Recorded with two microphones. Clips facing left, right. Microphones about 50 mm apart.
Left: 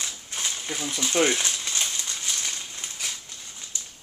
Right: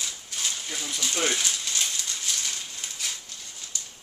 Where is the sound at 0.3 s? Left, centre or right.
Left.